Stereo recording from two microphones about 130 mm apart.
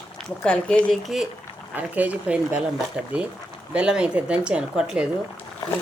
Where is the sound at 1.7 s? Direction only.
10° right (ahead or behind).